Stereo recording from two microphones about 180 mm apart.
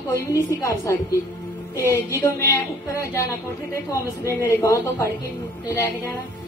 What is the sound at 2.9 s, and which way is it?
A woman's voice, 15° left (ahead or behind).